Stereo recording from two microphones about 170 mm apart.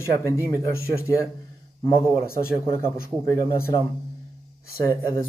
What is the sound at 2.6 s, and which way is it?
Speech, 15° left (ahead or behind).